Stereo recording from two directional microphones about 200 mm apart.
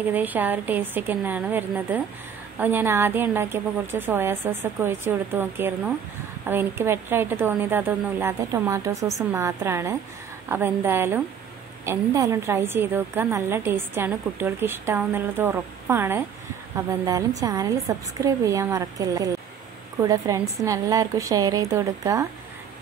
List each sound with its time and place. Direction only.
0.1 s a woman's voice: 10° right (ahead or behind)